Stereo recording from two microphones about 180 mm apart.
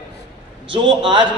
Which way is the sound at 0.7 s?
30° right (ahead or behind).